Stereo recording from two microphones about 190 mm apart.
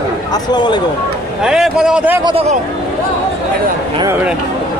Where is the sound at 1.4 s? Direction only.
5° right (ahead or behind).